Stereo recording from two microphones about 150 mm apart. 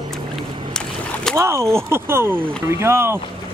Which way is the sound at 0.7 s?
5° left (ahead or behind).